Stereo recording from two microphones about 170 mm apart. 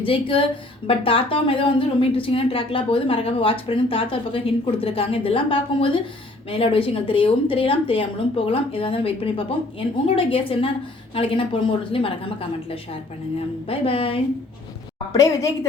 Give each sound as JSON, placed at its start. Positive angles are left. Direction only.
{"t": 0.0, "sound": "speech", "side_deg": 30}
{"t": 15.1, "sound": "a woman's voice", "side_deg": 20}